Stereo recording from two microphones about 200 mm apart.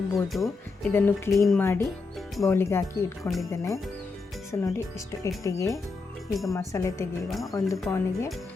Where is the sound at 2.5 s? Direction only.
10° left (ahead or behind).